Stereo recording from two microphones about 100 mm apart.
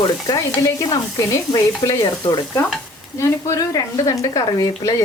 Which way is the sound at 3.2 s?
35° left (ahead or behind).